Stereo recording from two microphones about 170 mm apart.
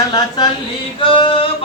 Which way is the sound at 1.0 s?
30° left (ahead or behind).